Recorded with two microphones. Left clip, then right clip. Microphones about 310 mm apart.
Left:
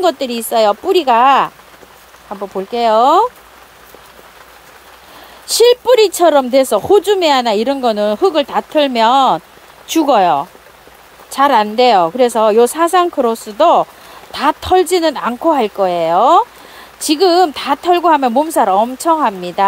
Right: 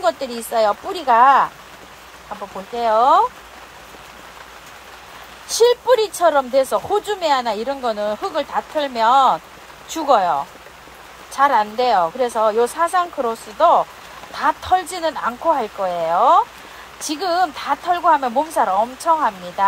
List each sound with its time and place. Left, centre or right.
0.0 s speech: left
2.7 s speech: left
5.5 s speech: left
11.3 s speech: left